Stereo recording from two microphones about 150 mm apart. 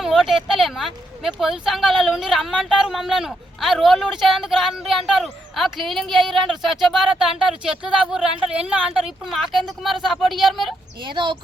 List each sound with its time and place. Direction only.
0.0 s speech: centre (ahead or behind)
11.0 s speech: 30° right (ahead or behind)